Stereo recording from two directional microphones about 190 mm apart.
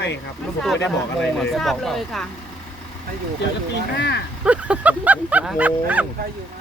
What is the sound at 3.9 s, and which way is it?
Speech, 65° left (ahead or behind).